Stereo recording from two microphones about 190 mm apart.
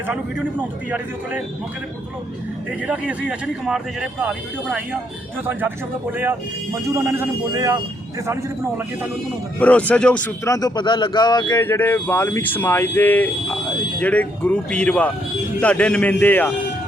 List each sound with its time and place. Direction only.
0.9 s speech: 10° right (ahead or behind)
2.8 s speech: 5° right (ahead or behind)
9.6 s a man's voice: 5° left (ahead or behind)
11.5 s a man's voice: 10° left (ahead or behind)